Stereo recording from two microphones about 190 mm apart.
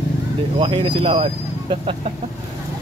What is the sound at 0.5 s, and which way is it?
Speech, 30° right (ahead or behind).